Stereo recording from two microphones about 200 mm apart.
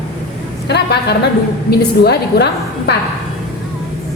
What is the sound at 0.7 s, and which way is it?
A woman's voice, 55° left (ahead or behind).